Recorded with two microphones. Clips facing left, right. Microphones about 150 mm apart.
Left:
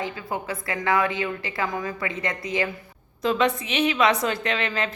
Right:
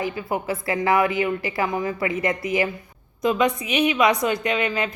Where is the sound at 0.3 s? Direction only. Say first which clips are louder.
Right 5 dB; 25° right (ahead or behind).